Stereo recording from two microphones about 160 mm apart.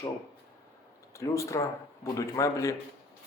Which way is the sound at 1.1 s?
20° left (ahead or behind).